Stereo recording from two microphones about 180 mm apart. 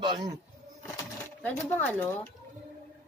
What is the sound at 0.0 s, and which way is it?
Speech, 25° right (ahead or behind).